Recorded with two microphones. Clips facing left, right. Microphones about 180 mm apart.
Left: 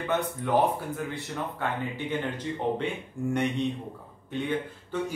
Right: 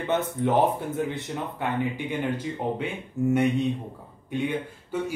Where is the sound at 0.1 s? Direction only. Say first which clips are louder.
Right 3 dB; 20° right (ahead or behind); by 3.4 s 5° right (ahead or behind).